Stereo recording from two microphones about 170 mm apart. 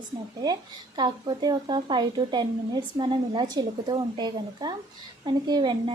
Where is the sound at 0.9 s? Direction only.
25° right (ahead or behind).